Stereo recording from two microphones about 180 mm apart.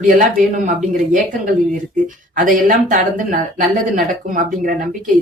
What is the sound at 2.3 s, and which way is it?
Speech, 45° right (ahead or behind).